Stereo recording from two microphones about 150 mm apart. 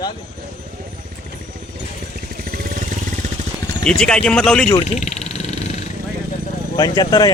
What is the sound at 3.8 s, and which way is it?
Speech, 5° left (ahead or behind).